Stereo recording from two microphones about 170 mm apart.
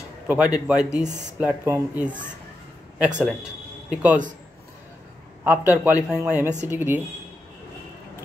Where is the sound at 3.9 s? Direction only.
10° right (ahead or behind).